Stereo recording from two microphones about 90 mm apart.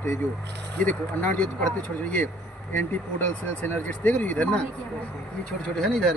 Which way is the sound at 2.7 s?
20° left (ahead or behind).